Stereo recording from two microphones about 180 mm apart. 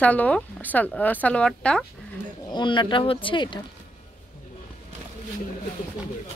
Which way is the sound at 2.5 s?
25° left (ahead or behind).